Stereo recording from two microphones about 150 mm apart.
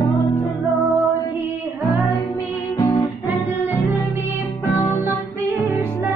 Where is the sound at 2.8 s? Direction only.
20° left (ahead or behind).